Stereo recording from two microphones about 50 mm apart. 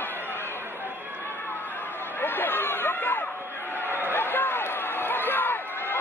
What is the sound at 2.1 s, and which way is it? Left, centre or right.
Chatter, left.